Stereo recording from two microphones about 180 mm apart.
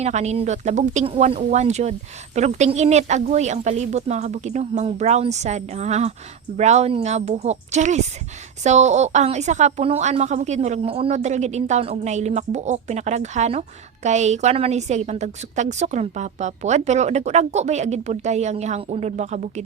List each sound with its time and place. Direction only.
0.0 s a woman's voice: 40° right (ahead or behind)